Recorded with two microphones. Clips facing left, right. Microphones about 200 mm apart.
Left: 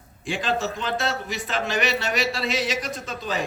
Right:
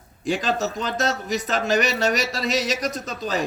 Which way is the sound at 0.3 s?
40° right (ahead or behind).